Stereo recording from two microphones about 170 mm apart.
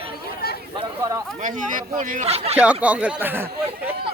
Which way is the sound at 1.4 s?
50° right (ahead or behind).